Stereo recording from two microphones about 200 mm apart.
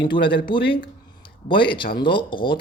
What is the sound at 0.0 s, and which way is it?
Speech, 25° left (ahead or behind).